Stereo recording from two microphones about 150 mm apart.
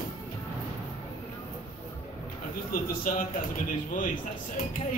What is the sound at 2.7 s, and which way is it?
A man's voice, 70° left (ahead or behind).